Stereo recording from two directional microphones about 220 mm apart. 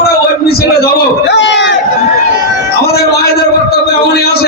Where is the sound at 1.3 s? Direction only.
55° left (ahead or behind).